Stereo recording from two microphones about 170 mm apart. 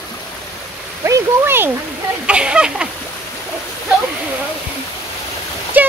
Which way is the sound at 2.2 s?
5° right (ahead or behind).